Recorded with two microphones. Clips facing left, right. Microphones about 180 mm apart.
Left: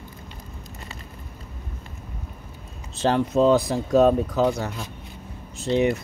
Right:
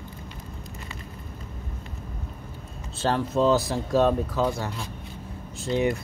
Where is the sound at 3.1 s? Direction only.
Centre (ahead or behind).